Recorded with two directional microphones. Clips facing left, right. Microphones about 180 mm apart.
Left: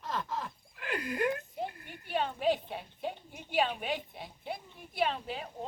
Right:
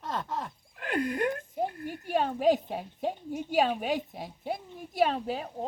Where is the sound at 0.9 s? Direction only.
50° right (ahead or behind).